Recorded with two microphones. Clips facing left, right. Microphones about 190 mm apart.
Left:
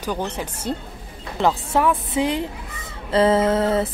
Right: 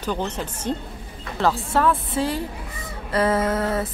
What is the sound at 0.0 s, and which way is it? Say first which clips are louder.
A woman's voice: even; 10° left (ahead or behind).